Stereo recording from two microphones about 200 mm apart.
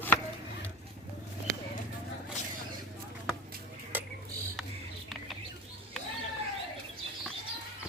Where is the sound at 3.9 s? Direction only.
10° right (ahead or behind).